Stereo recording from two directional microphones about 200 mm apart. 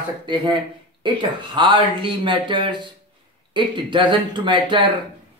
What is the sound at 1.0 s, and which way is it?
Speech, 25° right (ahead or behind).